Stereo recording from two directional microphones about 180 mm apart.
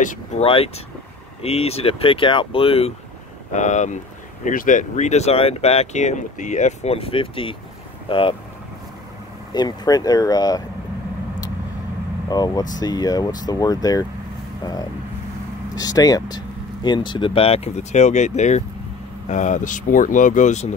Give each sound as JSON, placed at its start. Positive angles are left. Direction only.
{"t": 0.0, "sound": "speech", "side_deg": 40}
{"t": 9.5, "sound": "speech", "side_deg": 20}
{"t": 12.3, "sound": "speech", "side_deg": 20}
{"t": 15.7, "sound": "speech", "side_deg": 20}